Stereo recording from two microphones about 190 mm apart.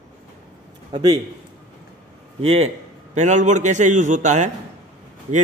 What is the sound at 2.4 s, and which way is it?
A man's voice, 35° right (ahead or behind).